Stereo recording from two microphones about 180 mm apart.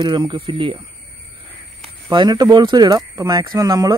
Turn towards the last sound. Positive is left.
turn(degrees=-20)  # may be behind; listen again after turning